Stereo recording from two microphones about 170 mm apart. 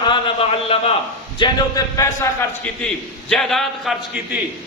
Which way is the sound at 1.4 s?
25° left (ahead or behind).